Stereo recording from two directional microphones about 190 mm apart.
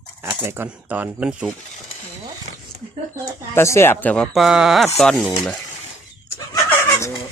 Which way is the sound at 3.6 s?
15° left (ahead or behind).